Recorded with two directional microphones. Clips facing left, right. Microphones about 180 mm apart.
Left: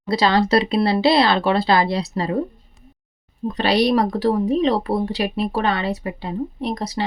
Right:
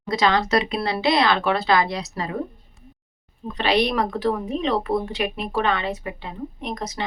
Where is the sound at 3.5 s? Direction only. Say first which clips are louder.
Left 3 dB; 40° left (ahead or behind).